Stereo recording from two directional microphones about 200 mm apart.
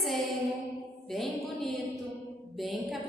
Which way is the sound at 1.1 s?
Centre (ahead or behind).